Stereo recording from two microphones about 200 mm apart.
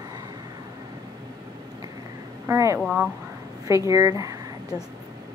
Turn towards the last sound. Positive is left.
turn(degrees=-15)  # may be behind; listen again after turning